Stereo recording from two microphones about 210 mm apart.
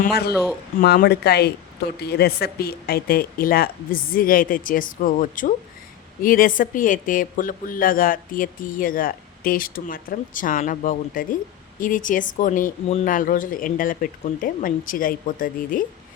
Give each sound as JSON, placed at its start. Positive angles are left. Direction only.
{"t": 0.8, "sound": "a woman's voice", "side_deg": 45}